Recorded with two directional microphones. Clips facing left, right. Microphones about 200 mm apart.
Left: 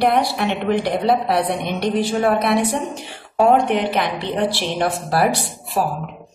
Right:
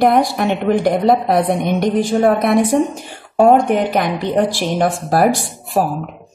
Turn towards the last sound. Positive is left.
turn(degrees=-45)  # may be behind; listen again after turning